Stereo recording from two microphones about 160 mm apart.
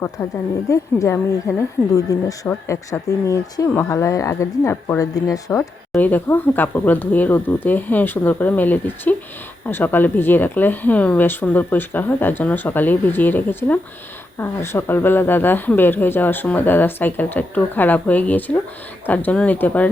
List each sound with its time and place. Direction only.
0.7 s a woman's voice: 20° left (ahead or behind)